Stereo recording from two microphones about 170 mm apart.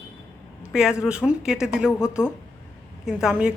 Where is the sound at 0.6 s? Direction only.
5° right (ahead or behind).